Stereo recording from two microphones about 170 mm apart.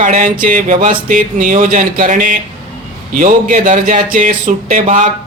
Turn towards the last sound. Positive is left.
turn(degrees=-50)  # may be behind; listen again after turning